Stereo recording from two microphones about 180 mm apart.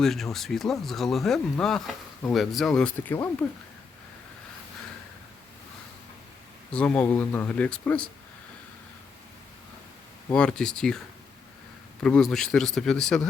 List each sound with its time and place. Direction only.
0.0 s speech: centre (ahead or behind)
6.7 s speech: 5° left (ahead or behind)
10.2 s speech: 5° left (ahead or behind)
12.0 s speech: 5° left (ahead or behind)